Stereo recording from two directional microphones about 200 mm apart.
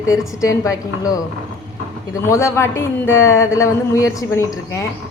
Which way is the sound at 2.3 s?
15° left (ahead or behind).